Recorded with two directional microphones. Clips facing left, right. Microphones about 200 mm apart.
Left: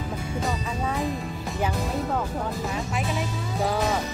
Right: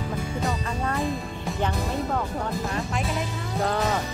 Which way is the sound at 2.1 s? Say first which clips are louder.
Even; 5° left (ahead or behind).